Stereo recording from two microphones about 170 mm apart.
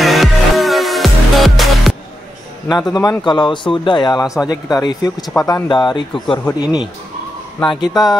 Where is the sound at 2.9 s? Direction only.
20° left (ahead or behind).